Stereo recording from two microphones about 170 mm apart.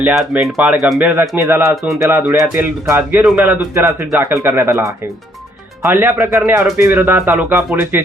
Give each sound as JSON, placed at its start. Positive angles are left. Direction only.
{"t": 0.0, "sound": "speech", "side_deg": -5}
{"t": 1.7, "sound": "speech", "side_deg": 0}
{"t": 2.6, "sound": "speech", "side_deg": -15}